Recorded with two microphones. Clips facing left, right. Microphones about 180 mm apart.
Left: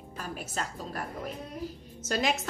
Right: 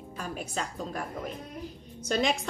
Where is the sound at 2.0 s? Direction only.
5° left (ahead or behind).